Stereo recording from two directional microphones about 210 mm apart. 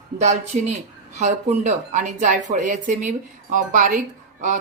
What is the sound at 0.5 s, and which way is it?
Speech, 35° right (ahead or behind).